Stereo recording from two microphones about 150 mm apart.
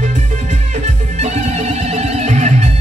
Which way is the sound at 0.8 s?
45° right (ahead or behind).